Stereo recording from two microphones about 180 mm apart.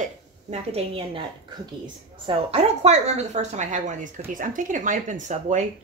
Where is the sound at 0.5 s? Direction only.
35° right (ahead or behind).